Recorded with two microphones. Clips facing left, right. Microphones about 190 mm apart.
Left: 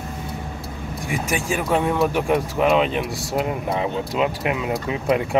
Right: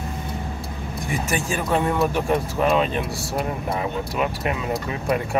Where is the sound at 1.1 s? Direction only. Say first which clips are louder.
Left 1 dB; 15° left (ahead or behind).